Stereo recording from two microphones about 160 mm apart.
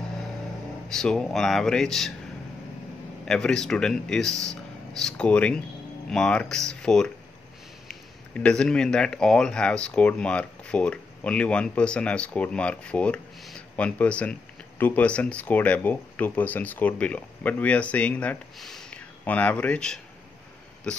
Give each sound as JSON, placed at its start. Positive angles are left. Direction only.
{"t": 0.8, "sound": "speech", "side_deg": 5}
{"t": 3.3, "sound": "speech", "side_deg": 5}